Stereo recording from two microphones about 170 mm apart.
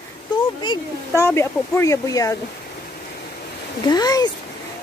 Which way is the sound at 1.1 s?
15° left (ahead or behind).